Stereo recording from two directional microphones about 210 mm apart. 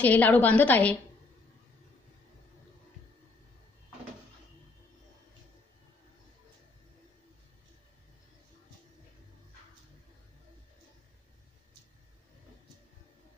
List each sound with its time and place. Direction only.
0.0 s a woman's voice: 10° left (ahead or behind)